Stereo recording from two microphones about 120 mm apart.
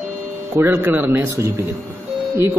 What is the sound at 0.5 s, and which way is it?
Speech, 15° right (ahead or behind).